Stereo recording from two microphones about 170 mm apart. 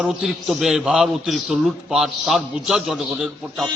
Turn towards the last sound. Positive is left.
turn(degrees=0)  # may be behind; listen again after turning